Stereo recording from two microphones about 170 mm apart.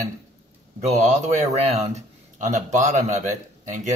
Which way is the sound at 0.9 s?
45° right (ahead or behind).